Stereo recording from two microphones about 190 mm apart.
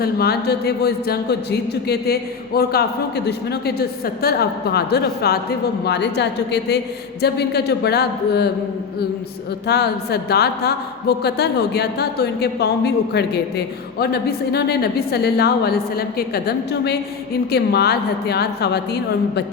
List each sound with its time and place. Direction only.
0.0 s speech: 55° left (ahead or behind)
9.6 s speech: 60° left (ahead or behind)